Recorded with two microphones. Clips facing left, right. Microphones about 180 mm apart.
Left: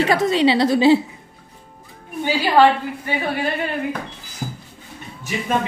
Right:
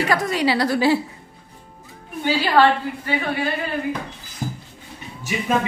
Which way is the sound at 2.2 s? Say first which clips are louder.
Left 1 dB; 15° left (ahead or behind).